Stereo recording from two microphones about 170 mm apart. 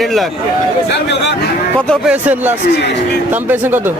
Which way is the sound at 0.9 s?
90° left.